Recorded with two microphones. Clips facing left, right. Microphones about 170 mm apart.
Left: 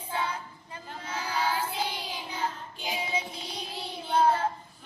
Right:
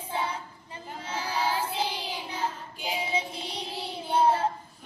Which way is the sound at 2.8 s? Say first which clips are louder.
Right 2 dB; 30° right (ahead or behind).